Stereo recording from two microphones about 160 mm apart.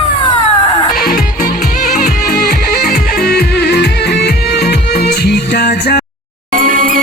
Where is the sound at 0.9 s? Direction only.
75° left (ahead or behind).